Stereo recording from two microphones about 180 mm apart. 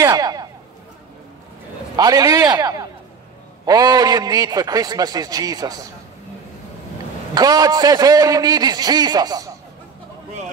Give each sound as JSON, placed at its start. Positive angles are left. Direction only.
{"t": 0.0, "sound": "speech", "side_deg": -20}
{"t": 2.0, "sound": "a man's voice", "side_deg": -20}
{"t": 7.3, "sound": "a man's voice", "side_deg": -20}